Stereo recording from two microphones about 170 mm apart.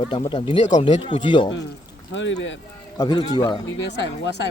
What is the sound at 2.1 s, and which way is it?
Speech, 90° left.